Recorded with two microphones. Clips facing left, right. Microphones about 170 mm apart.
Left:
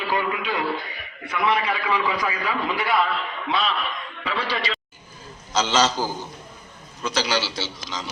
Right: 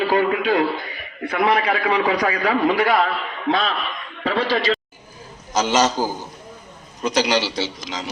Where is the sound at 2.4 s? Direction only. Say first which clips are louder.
Right 8 dB; 45° right (ahead or behind).